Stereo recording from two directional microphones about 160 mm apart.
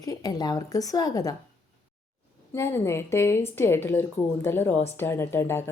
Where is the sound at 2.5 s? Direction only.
15° left (ahead or behind).